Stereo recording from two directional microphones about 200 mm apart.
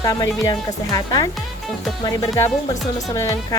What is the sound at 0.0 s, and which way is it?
Speech, 20° left (ahead or behind).